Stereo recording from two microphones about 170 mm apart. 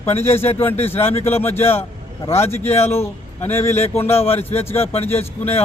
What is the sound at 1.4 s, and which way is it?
Speech, 15° left (ahead or behind).